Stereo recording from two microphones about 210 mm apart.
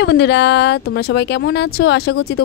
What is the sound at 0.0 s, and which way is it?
Speech, 55° left (ahead or behind).